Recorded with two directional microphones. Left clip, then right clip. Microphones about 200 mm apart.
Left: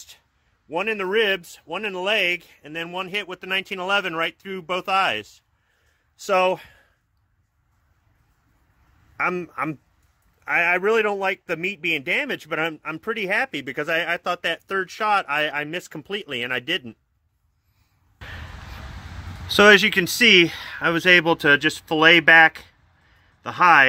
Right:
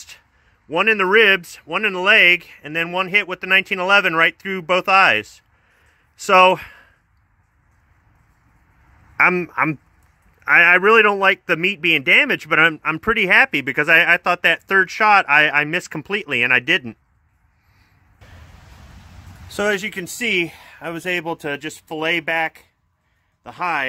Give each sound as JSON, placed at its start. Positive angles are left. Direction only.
{"t": 0.7, "sound": "a man's voice", "side_deg": -10}
{"t": 9.1, "sound": "a man's voice", "side_deg": -10}
{"t": 19.4, "sound": "speech", "side_deg": 5}